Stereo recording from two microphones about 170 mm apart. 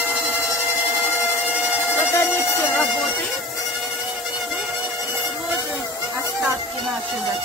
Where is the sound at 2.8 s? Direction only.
Centre (ahead or behind).